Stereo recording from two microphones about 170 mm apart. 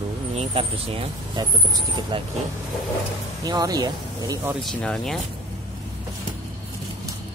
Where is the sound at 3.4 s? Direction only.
25° right (ahead or behind).